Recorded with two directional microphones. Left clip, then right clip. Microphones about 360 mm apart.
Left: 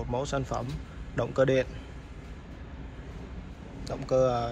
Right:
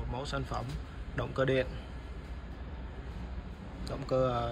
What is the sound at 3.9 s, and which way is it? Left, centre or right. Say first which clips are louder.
Speech: left 5 dB; centre.